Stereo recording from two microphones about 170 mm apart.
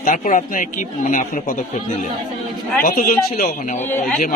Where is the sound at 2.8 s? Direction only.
55° left (ahead or behind).